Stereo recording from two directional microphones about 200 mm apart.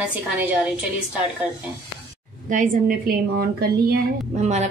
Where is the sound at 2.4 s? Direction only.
40° right (ahead or behind).